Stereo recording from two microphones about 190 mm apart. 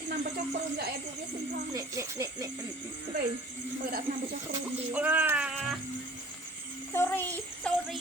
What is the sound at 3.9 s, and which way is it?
Speech, 50° right (ahead or behind).